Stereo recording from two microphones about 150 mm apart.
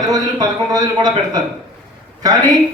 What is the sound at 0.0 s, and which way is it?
A man's voice, 25° right (ahead or behind).